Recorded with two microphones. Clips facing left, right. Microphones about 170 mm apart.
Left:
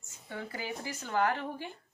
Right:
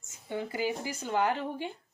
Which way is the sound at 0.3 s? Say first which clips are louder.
Right 7 dB; 20° right (ahead or behind).